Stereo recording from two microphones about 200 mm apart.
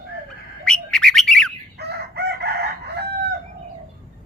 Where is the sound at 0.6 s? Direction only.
5° left (ahead or behind).